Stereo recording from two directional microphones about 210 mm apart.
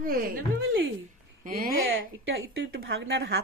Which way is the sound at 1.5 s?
45° right (ahead or behind).